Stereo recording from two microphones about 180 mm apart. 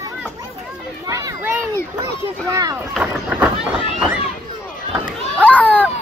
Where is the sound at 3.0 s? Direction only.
10° right (ahead or behind).